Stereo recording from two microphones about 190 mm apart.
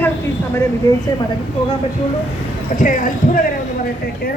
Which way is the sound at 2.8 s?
45° left (ahead or behind).